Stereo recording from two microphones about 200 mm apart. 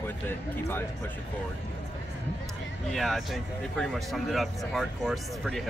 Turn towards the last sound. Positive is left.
turn(degrees=0)  # may be behind; listen again after turning